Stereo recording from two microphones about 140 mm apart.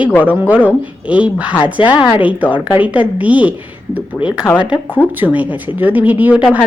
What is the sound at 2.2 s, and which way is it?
A woman's voice, 10° right (ahead or behind).